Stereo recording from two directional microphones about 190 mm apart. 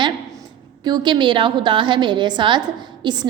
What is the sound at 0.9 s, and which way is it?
A woman's voice, 20° right (ahead or behind).